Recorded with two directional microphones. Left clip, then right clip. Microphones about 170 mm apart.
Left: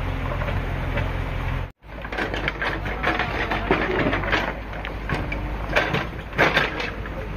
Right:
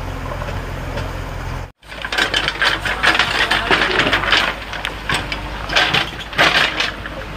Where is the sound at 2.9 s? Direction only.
15° left (ahead or behind).